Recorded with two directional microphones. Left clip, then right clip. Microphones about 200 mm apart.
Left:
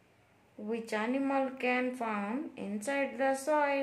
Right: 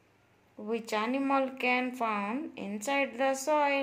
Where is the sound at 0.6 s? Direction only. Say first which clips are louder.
Right 3 dB; 10° right (ahead or behind).